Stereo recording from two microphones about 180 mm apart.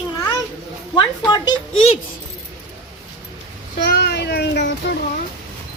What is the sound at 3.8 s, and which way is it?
A child's voice, 65° left (ahead or behind).